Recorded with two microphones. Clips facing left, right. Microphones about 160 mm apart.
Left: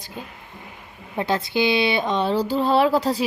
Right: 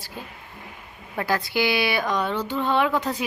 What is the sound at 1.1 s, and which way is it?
Speech, 20° left (ahead or behind).